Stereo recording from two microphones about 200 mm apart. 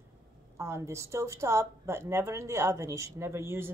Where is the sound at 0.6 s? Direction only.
15° right (ahead or behind).